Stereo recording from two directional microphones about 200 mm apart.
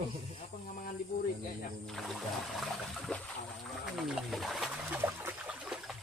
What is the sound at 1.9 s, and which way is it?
Music, centre (ahead or behind).